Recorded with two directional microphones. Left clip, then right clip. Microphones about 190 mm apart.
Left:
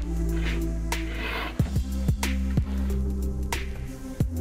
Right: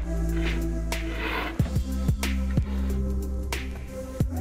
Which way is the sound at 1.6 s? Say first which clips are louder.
Right 1 dB; centre (ahead or behind).